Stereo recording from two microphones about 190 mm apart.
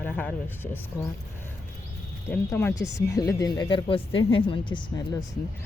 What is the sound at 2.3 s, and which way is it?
Speech, 10° left (ahead or behind).